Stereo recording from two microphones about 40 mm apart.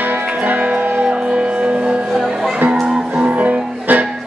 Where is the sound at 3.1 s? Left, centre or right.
Right.